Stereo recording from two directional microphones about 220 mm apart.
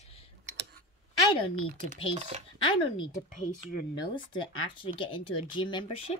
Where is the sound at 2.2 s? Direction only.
30° right (ahead or behind).